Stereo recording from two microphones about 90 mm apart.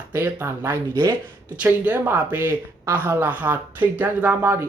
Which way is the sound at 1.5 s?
15° right (ahead or behind).